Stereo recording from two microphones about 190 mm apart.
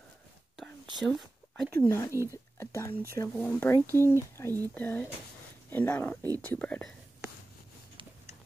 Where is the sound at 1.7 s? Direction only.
15° left (ahead or behind).